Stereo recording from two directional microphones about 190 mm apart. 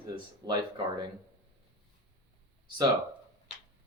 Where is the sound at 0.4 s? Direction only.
20° right (ahead or behind).